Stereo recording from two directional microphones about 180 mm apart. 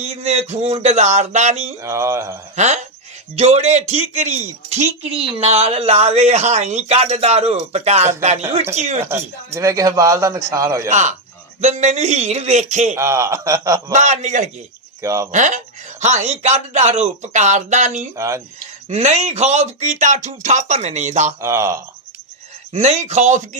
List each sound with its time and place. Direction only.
0.0 s speech: 35° right (ahead or behind)
1.8 s speech: 15° right (ahead or behind)
2.6 s speech: 40° right (ahead or behind)
9.0 s speech: 15° right (ahead or behind)
10.8 s speech: 40° right (ahead or behind)
13.0 s speech: 15° right (ahead or behind)
13.9 s speech: 40° right (ahead or behind)
15.0 s speech: 15° right (ahead or behind)
15.3 s speech: 45° right (ahead or behind)
18.2 s speech: 15° right (ahead or behind)
18.9 s speech: 35° right (ahead or behind)
21.4 s speech: 15° right (ahead or behind)
22.7 s speech: 40° right (ahead or behind)